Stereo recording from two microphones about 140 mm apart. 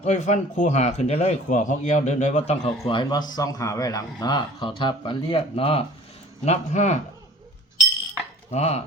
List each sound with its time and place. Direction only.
0.0 s speech: 55° left (ahead or behind)
1.5 s a man's voice: 65° left (ahead or behind)
2.6 s a man's voice: 35° left (ahead or behind)
6.4 s a man's voice: 55° left (ahead or behind)
8.4 s speech: 50° left (ahead or behind)